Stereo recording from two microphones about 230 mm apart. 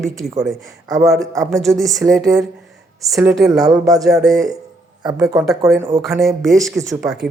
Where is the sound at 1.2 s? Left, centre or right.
Centre.